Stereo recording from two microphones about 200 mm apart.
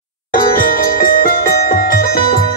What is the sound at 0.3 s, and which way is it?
Music, 45° left (ahead or behind).